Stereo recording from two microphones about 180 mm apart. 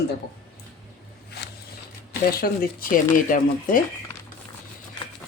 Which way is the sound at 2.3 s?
55° left (ahead or behind).